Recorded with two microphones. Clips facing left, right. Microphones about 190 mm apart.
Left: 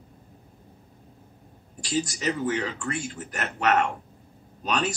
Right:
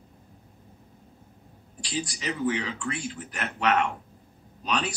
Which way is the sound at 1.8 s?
45° left (ahead or behind).